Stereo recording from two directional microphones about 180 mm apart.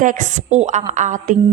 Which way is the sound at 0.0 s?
45° right (ahead or behind).